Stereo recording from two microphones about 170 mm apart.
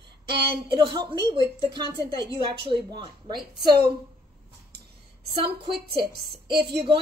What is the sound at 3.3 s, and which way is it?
Speech, 70° right (ahead or behind).